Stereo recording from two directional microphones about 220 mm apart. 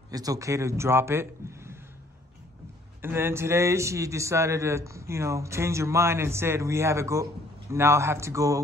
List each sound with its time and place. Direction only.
0.1 s a man's voice: 15° right (ahead or behind)
3.0 s a man's voice: 10° right (ahead or behind)